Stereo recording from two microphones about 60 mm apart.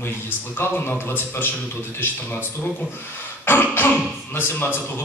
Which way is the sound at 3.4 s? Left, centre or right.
Left.